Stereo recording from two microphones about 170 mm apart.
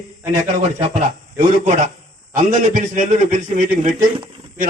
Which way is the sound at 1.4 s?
45° right (ahead or behind).